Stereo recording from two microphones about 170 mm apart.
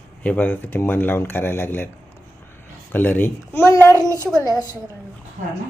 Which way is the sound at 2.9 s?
10° left (ahead or behind).